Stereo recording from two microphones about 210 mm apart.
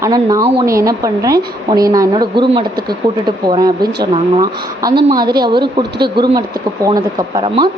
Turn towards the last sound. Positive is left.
turn(degrees=-20)  # may be behind; listen again after turning